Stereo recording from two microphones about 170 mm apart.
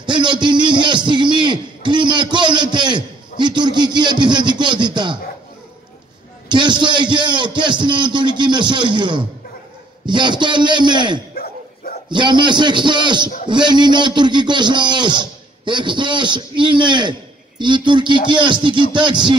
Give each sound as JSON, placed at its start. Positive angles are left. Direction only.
{"t": 0.0, "sound": "a sound", "side_deg": -25}
{"t": 6.5, "sound": "a man's voice", "side_deg": -25}
{"t": 11.4, "sound": "dog", "side_deg": 65}
{"t": 12.1, "sound": "a man's voice", "side_deg": -25}